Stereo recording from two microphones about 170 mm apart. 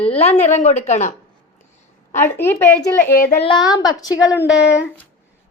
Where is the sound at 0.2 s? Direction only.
40° left (ahead or behind).